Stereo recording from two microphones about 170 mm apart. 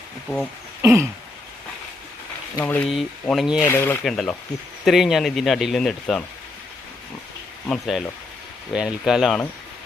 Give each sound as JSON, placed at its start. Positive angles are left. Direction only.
{"t": 0.8, "sound": "throat clearing", "side_deg": -15}
{"t": 2.6, "sound": "speech", "side_deg": 10}
{"t": 3.6, "sound": "speech", "side_deg": 10}
{"t": 4.0, "sound": "speech", "side_deg": 0}
{"t": 7.7, "sound": "speech", "side_deg": 0}